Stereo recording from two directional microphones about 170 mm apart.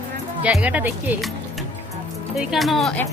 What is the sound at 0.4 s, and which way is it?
Speech, 10° right (ahead or behind).